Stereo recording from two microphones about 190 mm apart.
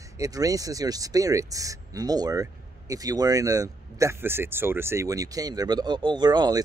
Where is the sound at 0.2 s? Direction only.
20° right (ahead or behind).